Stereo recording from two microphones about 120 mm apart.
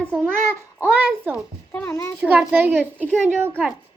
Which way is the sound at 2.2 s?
10° right (ahead or behind).